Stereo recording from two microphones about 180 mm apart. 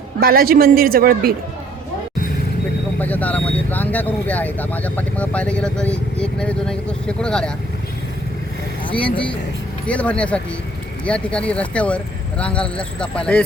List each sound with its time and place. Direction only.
0.2 s a man's voice: 55° right (ahead or behind)
3.0 s speech: 10° left (ahead or behind)
9.0 s speech: 5° left (ahead or behind)